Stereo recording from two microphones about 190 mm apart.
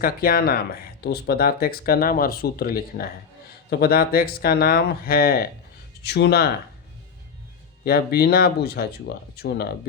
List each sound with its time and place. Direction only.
0.0 s speech: 50° left (ahead or behind)
7.9 s speech: 55° left (ahead or behind)